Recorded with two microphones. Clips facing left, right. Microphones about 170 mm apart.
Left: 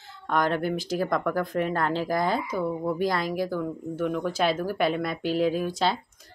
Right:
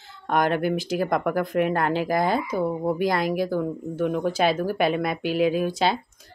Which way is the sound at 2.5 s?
25° right (ahead or behind).